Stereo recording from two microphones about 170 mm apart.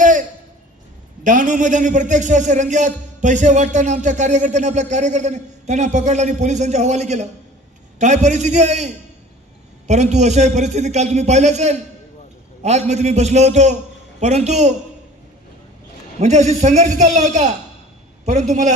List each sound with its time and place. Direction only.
0.0 s a sound: 50° right (ahead or behind)
1.2 s a man's voice: 50° right (ahead or behind)
16.2 s a man's voice: 45° right (ahead or behind)